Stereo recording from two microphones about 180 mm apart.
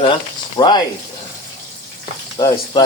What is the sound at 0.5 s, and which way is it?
Stir, 25° left (ahead or behind).